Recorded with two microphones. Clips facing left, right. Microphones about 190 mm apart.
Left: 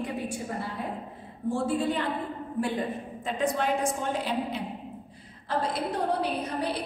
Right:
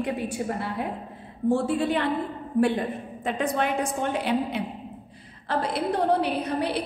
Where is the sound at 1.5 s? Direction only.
70° right (ahead or behind).